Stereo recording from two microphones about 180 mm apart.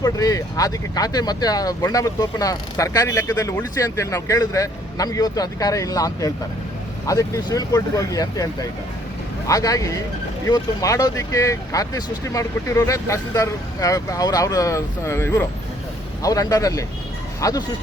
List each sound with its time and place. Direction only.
0.0 s speech: 20° left (ahead or behind)
9.5 s speech: 20° left (ahead or behind)